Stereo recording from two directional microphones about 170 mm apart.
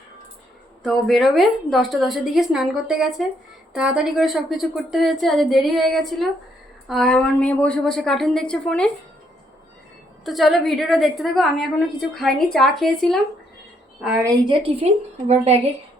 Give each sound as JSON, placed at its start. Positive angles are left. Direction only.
{"t": 0.8, "sound": "a woman's voice", "side_deg": 0}
{"t": 10.2, "sound": "a woman's voice", "side_deg": 0}
{"t": 14.3, "sound": "a woman's voice", "side_deg": -30}